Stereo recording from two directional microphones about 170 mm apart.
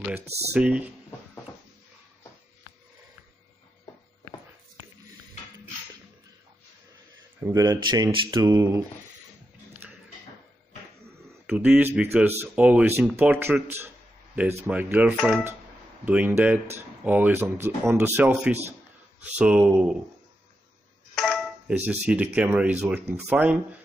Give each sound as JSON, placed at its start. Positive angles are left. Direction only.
{"t": 0.2, "sound": "speech", "side_deg": -40}
{"t": 0.5, "sound": "speech", "side_deg": -5}
{"t": 7.3, "sound": "speech", "side_deg": -15}
{"t": 11.4, "sound": "speech", "side_deg": -10}
{"t": 21.1, "sound": "a sound", "side_deg": 0}
{"t": 21.8, "sound": "speech", "side_deg": -10}